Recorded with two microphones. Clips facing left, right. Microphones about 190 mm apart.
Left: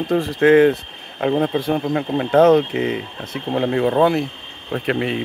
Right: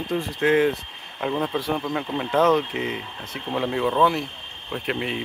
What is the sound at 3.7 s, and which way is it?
Speech, 55° left (ahead or behind).